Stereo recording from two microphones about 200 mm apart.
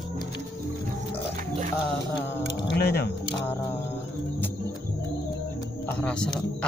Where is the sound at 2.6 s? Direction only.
55° left (ahead or behind).